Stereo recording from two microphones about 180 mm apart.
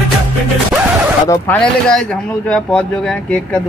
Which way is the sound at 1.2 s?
15° left (ahead or behind).